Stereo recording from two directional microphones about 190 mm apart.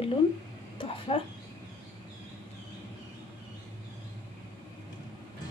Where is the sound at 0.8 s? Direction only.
30° left (ahead or behind).